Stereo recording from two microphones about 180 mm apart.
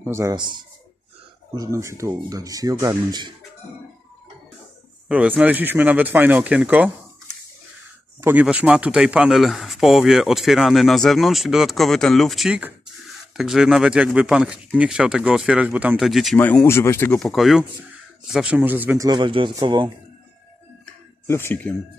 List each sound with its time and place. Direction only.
0.0 s speech: 15° right (ahead or behind)
5.0 s speech: 5° right (ahead or behind)
8.2 s a man's voice: 10° right (ahead or behind)
16.3 s speech: 10° left (ahead or behind); by 19.0 s 10° right (ahead or behind)
19.0 s speech: 25° right (ahead or behind)
21.3 s speech: 15° left (ahead or behind)